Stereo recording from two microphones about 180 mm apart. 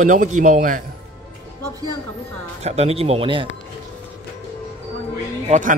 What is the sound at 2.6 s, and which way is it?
Speech, 35° right (ahead or behind).